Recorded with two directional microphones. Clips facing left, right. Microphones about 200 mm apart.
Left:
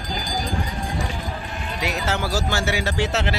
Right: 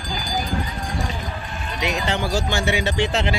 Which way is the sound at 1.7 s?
5° left (ahead or behind).